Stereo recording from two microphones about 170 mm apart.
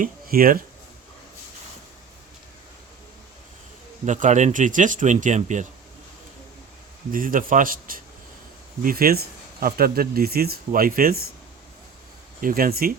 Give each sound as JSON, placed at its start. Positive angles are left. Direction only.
{"t": 0.0, "sound": "speech", "side_deg": -60}
{"t": 4.0, "sound": "speech", "side_deg": -45}
{"t": 7.1, "sound": "speech", "side_deg": -55}
{"t": 12.4, "sound": "speech", "side_deg": -55}